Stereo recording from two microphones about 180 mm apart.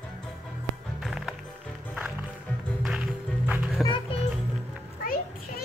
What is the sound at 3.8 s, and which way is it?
Children playing, 30° left (ahead or behind).